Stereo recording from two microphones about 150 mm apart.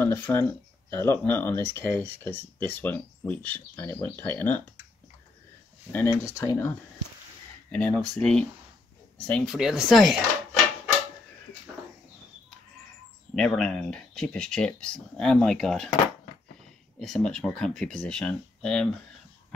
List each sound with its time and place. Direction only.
0.0 s speech: 15° left (ahead or behind)
5.9 s speech: 15° left (ahead or behind)
7.7 s speech: 5° left (ahead or behind)
13.3 s speech: 5° left (ahead or behind)
17.0 s speech: 5° left (ahead or behind)